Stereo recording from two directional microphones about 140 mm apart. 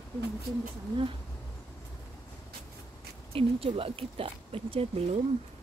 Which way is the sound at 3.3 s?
40° right (ahead or behind).